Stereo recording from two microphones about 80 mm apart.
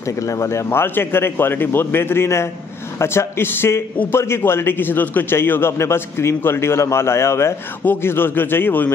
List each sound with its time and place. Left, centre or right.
0.0 s a man's voice: left